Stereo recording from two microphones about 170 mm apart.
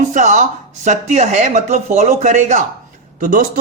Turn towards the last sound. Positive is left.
turn(degrees=-50)  # may be behind; listen again after turning